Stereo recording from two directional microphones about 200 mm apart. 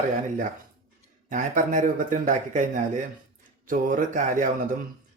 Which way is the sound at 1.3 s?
40° right (ahead or behind).